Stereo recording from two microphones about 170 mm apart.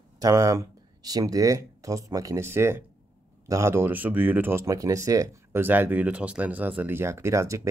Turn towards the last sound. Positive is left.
turn(degrees=-15)  # may be behind; listen again after turning